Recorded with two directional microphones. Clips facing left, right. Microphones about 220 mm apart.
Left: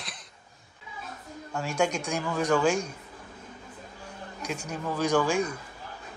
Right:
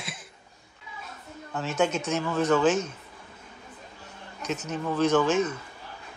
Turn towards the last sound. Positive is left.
turn(degrees=10)  # may be behind; listen again after turning